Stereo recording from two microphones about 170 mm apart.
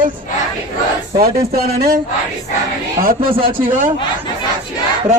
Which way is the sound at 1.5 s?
65° right (ahead or behind).